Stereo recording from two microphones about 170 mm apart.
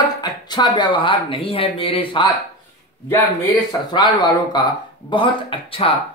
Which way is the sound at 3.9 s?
25° left (ahead or behind).